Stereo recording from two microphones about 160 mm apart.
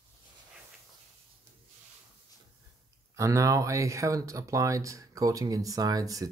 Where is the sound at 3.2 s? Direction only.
20° right (ahead or behind).